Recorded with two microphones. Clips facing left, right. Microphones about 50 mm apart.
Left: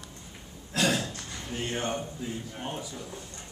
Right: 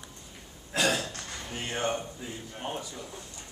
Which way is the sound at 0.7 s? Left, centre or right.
Centre.